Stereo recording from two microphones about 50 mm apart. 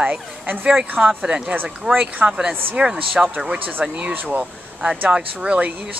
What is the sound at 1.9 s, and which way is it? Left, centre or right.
Speech, right.